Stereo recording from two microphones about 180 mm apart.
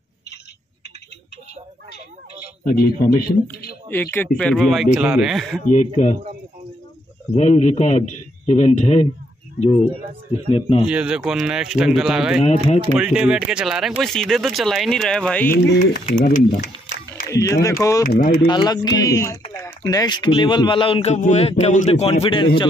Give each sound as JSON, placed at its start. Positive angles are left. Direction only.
{"t": 2.8, "sound": "speech", "side_deg": 55}
{"t": 3.9, "sound": "speech", "side_deg": 10}
{"t": 5.7, "sound": "speech", "side_deg": 45}
{"t": 7.3, "sound": "a man's voice", "side_deg": 40}
{"t": 10.9, "sound": "speech", "side_deg": -5}
{"t": 16.2, "sound": "speech", "side_deg": 50}
{"t": 16.4, "sound": "a sound", "side_deg": 50}
{"t": 17.3, "sound": "speech", "side_deg": 20}
{"t": 18.0, "sound": "speech", "side_deg": 55}
{"t": 18.5, "sound": "a man's voice", "side_deg": 20}